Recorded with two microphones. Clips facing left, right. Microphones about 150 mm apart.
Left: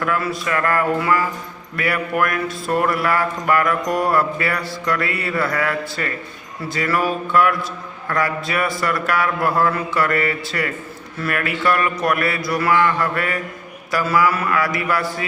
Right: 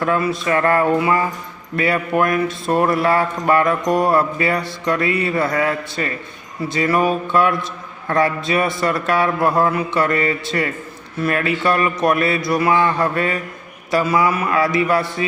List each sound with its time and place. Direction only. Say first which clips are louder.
0.0 s speech: right 3 dB; 25° right (ahead or behind)